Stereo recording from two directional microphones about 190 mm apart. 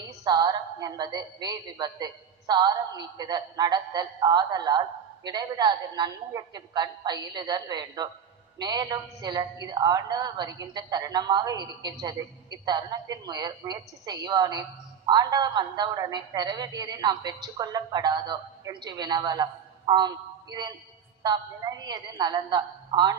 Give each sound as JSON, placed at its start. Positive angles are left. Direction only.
{"t": 0.3, "sound": "a woman's voice", "side_deg": -20}